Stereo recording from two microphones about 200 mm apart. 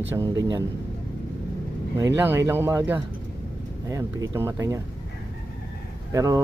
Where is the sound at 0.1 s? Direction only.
15° right (ahead or behind).